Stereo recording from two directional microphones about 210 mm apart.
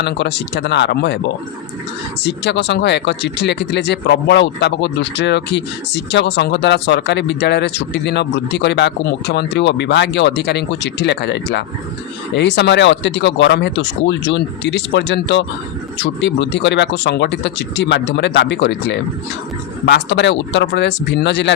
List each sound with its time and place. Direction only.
0.0 s speech: 55° left (ahead or behind)
2.2 s speech: 55° left (ahead or behind)